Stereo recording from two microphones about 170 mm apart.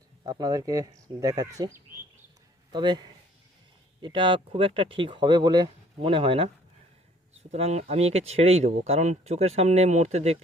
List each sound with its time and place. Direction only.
0.3 s speech: 20° right (ahead or behind)
7.5 s speech: 40° right (ahead or behind)